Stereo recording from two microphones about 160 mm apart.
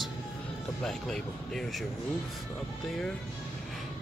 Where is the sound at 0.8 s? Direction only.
5° left (ahead or behind).